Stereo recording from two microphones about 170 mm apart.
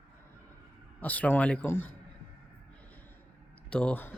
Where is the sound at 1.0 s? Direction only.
10° left (ahead or behind).